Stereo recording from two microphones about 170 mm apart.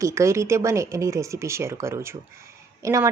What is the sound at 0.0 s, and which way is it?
A woman's voice, 15° right (ahead or behind).